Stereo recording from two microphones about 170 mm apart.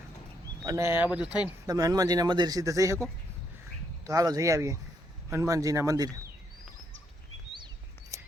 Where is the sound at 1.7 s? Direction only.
20° right (ahead or behind).